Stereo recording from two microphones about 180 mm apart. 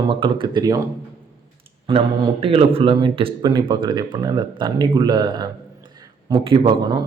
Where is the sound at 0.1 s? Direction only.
25° right (ahead or behind).